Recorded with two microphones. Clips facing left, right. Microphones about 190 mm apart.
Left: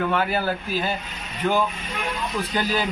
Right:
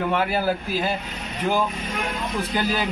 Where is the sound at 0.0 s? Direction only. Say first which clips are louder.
Right 1 dB; 10° right (ahead or behind).